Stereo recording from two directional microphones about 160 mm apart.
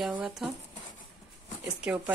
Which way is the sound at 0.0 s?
5° right (ahead or behind).